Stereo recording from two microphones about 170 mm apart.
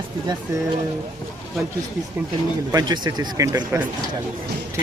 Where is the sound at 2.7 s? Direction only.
25° right (ahead or behind).